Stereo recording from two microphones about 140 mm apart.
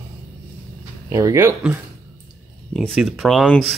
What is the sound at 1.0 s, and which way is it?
Speech, 20° right (ahead or behind).